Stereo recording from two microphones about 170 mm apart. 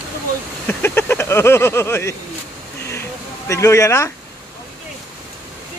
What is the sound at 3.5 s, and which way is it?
Speech, 20° left (ahead or behind).